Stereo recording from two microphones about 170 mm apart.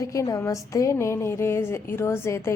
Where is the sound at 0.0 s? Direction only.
20° left (ahead or behind).